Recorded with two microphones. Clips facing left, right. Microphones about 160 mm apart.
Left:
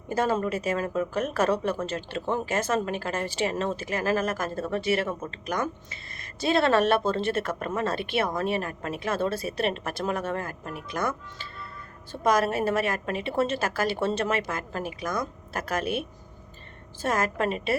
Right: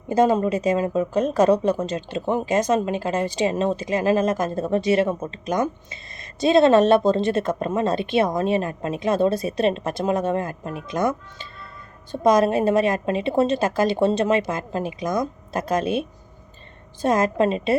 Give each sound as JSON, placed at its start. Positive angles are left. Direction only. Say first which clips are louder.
{"t": 0.1, "sound": "a woman's voice", "louder": "right 7 dB", "side_deg": -20}